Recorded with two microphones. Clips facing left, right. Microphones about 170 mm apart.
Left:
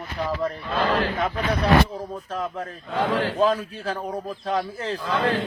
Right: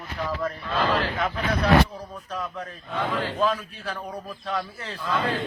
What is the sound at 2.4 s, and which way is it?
A man's voice, 45° left (ahead or behind).